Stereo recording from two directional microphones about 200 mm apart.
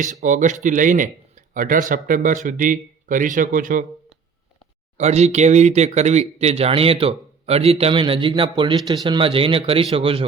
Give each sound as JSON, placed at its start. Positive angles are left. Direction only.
{"t": 0.1, "sound": "speech", "side_deg": -40}
{"t": 4.9, "sound": "speech", "side_deg": -35}